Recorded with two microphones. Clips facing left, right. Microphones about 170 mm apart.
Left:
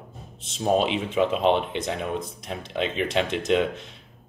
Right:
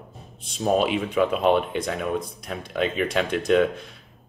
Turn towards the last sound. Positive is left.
turn(degrees=20)  # may be behind; listen again after turning